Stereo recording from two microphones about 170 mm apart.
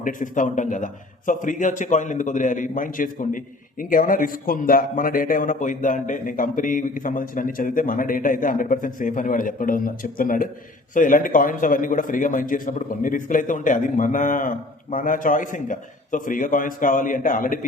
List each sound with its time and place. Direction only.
0.0 s a man's voice: 50° left (ahead or behind)